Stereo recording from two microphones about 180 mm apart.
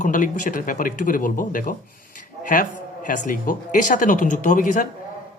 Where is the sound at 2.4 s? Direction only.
50° left (ahead or behind).